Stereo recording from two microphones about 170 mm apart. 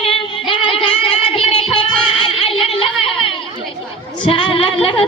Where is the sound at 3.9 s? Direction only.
30° left (ahead or behind).